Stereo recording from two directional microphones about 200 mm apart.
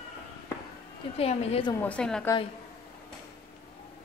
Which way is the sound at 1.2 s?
30° left (ahead or behind).